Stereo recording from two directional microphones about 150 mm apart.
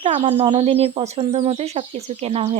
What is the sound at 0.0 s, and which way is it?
A child's voice, 40° right (ahead or behind).